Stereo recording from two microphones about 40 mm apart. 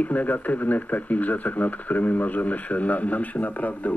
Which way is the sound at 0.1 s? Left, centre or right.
Left.